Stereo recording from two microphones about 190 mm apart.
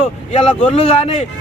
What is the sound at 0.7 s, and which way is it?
Speech, 30° left (ahead or behind).